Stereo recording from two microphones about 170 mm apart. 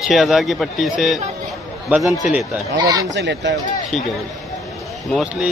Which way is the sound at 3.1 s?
90° right.